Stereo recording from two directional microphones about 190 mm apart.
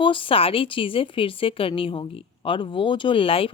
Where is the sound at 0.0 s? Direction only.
25° left (ahead or behind).